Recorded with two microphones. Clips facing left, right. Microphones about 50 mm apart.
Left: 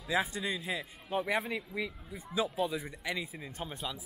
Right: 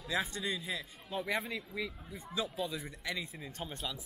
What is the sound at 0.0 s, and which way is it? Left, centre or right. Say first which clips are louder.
Speech: left 3 dB; centre.